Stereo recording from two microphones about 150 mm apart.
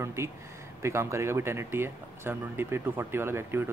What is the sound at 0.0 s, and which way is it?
Speech, 20° right (ahead or behind).